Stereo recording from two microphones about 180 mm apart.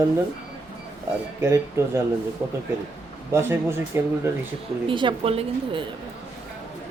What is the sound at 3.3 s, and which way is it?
Speech, 15° right (ahead or behind).